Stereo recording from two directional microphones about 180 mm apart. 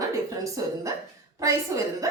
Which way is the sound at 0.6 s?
20° right (ahead or behind).